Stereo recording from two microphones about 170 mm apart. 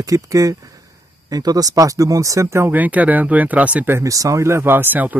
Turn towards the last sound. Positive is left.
turn(degrees=-10)  # may be behind; listen again after turning